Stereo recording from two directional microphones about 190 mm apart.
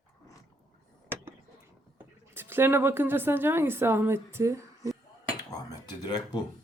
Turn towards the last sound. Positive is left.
turn(degrees=20)  # may be behind; listen again after turning